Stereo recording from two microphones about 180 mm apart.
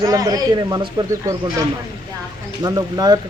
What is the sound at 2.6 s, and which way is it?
Speech, 20° right (ahead or behind).